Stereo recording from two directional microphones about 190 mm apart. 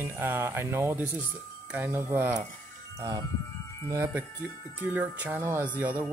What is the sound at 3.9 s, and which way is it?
Speech, 15° right (ahead or behind).